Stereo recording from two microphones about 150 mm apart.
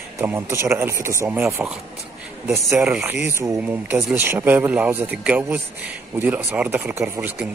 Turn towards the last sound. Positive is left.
turn(degrees=-10)  # may be behind; listen again after turning